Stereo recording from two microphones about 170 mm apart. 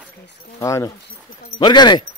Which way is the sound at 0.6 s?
15° left (ahead or behind).